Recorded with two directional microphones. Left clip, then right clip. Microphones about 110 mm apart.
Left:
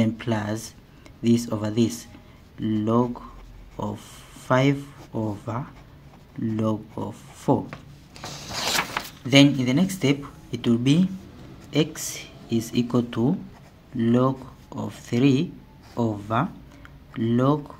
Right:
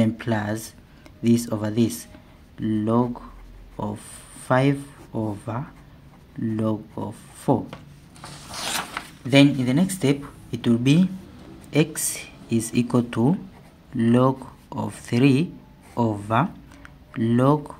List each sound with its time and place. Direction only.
0.0 s speech: 15° right (ahead or behind)
3.7 s a sound: 10° right (ahead or behind)
4.5 s speech: 10° right (ahead or behind)
9.3 s speech: 10° right (ahead or behind); by 17.7 s 25° right (ahead or behind)